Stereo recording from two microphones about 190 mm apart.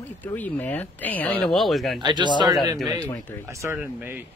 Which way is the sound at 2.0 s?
25° right (ahead or behind).